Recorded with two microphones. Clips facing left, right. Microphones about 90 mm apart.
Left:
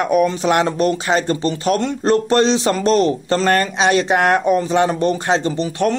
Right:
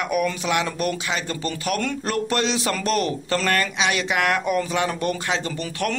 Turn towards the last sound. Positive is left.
turn(degrees=30)  # may be behind; listen again after turning